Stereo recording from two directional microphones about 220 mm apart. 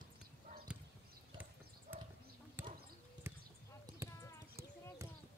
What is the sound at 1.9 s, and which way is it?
Clip-clop, 10° right (ahead or behind).